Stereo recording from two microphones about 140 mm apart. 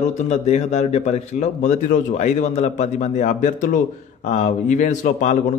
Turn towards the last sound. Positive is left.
turn(degrees=65)  # may be behind; listen again after turning